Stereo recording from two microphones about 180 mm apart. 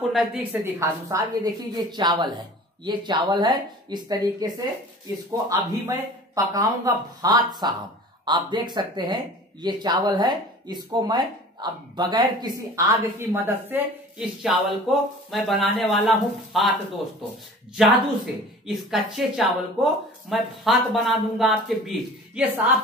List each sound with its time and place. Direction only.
0.1 s a woman's voice: 5° right (ahead or behind); by 4.5 s 25° right (ahead or behind)
5.5 s speech: 20° right (ahead or behind)
13.3 s a woman's voice: 10° right (ahead or behind)
17.7 s speech: centre (ahead or behind)